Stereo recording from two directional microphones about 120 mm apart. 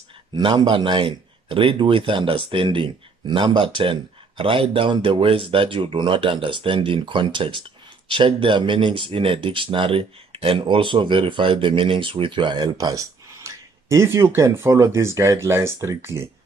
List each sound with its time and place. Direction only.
0.3 s speech: 40° right (ahead or behind); by 16.3 s 20° right (ahead or behind)